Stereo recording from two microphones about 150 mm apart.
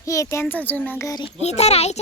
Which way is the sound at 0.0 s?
20° left (ahead or behind).